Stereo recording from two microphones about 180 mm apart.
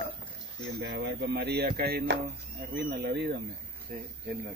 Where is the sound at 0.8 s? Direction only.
70° right (ahead or behind).